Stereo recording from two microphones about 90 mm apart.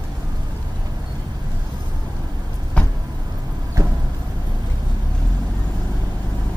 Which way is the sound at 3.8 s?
40° right (ahead or behind).